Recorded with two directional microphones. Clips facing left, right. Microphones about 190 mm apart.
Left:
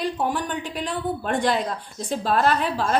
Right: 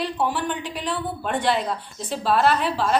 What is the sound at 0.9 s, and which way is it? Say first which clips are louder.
A woman's voice: left 1 dB; 45° left (ahead or behind).